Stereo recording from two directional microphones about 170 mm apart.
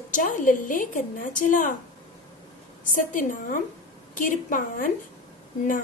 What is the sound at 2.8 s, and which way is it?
A woman's voice, 50° left (ahead or behind).